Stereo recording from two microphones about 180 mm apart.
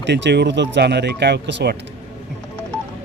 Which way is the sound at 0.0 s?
75° right (ahead or behind).